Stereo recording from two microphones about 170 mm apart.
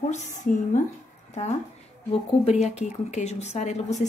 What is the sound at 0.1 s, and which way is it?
Speech, 50° left (ahead or behind).